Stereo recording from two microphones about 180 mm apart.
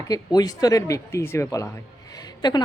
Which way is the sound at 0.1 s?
20° left (ahead or behind).